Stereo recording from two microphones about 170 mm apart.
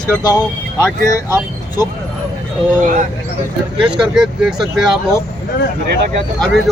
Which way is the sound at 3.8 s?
5° right (ahead or behind).